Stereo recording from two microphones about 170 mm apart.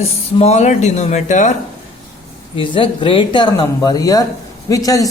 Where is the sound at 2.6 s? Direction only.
30° left (ahead or behind).